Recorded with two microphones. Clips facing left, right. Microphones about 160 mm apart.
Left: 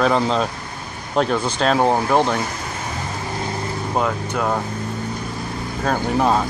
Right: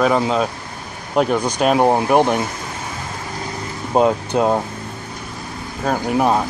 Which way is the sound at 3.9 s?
30° right (ahead or behind).